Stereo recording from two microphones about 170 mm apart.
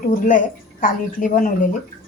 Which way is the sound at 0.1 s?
50° left (ahead or behind).